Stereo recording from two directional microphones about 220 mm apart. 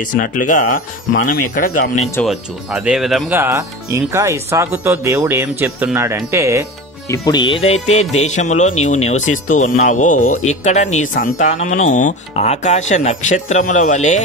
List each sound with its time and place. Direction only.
0.0 s speech: 35° left (ahead or behind)
2.2 s speech: 5° right (ahead or behind)
7.1 s speech: 20° left (ahead or behind)